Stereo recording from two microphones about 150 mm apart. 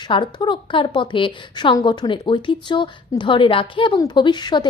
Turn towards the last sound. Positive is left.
turn(degrees=30)  # may be behind; listen again after turning